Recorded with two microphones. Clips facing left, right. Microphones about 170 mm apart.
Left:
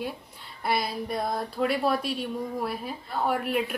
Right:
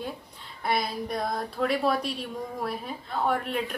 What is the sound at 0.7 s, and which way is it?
Speech, centre (ahead or behind).